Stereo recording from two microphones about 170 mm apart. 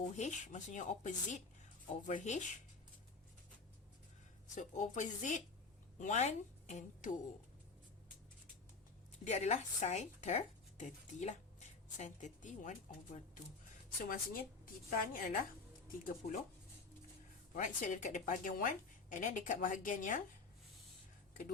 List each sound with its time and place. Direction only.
0.2 s speech: 45° left (ahead or behind)
4.5 s a woman's voice: 45° left (ahead or behind)
9.2 s speech: 40° left (ahead or behind)
14.0 s a woman's voice: 55° left (ahead or behind)
17.5 s speech: 50° left (ahead or behind)